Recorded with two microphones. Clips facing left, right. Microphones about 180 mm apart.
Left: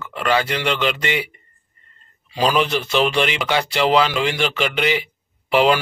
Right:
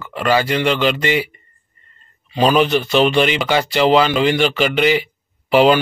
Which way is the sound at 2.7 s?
Centre (ahead or behind).